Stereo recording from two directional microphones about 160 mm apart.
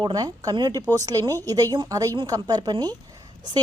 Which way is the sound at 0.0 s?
25° right (ahead or behind).